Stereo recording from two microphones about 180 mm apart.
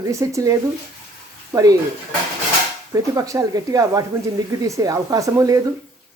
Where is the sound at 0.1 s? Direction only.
15° right (ahead or behind).